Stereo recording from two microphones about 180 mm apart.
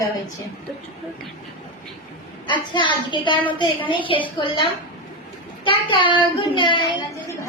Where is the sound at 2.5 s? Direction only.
25° left (ahead or behind).